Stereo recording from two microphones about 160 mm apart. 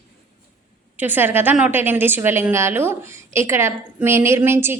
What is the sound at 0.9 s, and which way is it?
A woman's voice, 10° right (ahead or behind).